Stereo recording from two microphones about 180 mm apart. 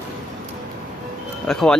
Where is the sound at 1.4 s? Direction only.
Centre (ahead or behind).